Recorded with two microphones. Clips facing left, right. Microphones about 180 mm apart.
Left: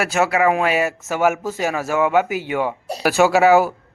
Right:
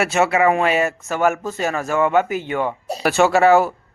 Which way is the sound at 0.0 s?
Centre (ahead or behind).